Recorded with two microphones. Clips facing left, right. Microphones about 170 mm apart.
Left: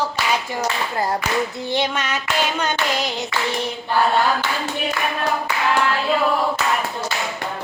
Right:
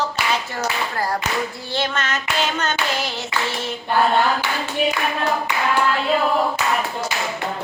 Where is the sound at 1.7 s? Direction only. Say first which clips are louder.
Left 1 dB; 15° left (ahead or behind).